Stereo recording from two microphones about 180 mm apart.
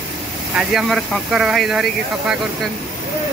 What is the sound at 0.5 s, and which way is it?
Speech, centre (ahead or behind).